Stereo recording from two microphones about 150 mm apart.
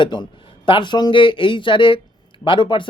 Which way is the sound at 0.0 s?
30° left (ahead or behind).